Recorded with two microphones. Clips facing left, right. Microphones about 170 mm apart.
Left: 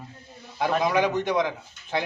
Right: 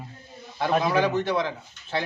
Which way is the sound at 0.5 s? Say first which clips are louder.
Even; 15° left (ahead or behind).